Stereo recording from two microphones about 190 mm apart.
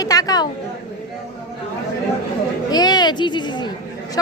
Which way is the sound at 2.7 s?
20° left (ahead or behind).